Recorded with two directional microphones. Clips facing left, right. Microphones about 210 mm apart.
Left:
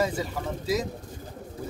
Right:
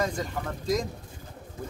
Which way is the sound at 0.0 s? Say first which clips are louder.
Left 2 dB; 5° left (ahead or behind).